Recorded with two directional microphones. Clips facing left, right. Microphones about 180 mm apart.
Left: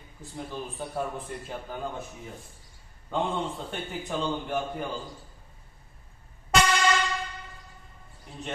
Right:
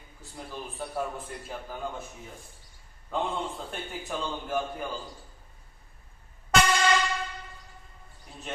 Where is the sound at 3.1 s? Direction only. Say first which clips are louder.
Left 2 dB; centre (ahead or behind).